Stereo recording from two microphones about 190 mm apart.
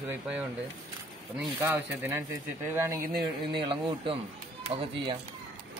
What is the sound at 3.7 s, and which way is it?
Speech, 25° right (ahead or behind).